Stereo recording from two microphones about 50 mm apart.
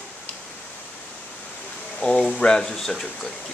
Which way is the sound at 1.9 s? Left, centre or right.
Centre.